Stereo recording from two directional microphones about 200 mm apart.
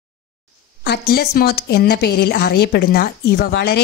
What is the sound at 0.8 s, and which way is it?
A woman's voice, 50° left (ahead or behind).